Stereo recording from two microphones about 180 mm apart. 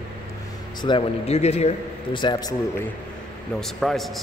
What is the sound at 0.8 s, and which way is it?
A man's voice, 25° left (ahead or behind).